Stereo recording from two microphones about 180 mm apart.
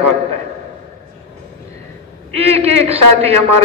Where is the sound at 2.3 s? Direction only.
35° right (ahead or behind).